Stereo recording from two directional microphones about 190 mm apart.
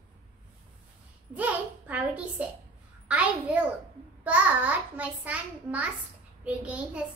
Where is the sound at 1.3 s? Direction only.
10° right (ahead or behind).